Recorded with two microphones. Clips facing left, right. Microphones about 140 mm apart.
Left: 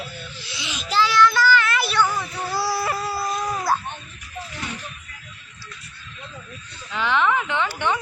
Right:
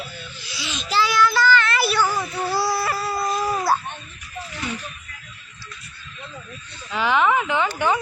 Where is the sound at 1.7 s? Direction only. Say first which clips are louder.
Right 1 dB; 10° right (ahead or behind).